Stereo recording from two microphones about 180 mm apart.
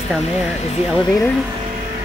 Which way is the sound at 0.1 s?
Centre (ahead or behind).